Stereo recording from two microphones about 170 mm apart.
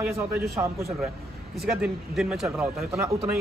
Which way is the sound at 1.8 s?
5° right (ahead or behind).